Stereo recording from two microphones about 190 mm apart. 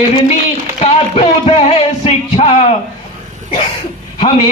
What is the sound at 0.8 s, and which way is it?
Music, 30° left (ahead or behind).